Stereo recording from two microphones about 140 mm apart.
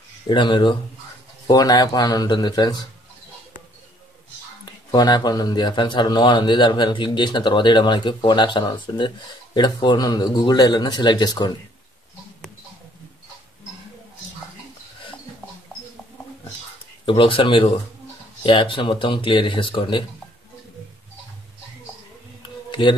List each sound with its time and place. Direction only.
0.3 s speech: 35° left (ahead or behind)
4.6 s speech: 30° left (ahead or behind)
17.0 s speech: 40° left (ahead or behind)
22.7 s a sound: 35° left (ahead or behind)